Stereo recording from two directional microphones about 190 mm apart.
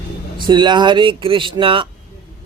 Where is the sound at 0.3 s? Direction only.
25° right (ahead or behind).